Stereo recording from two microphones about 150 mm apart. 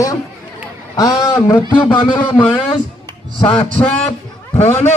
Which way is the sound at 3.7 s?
10° left (ahead or behind).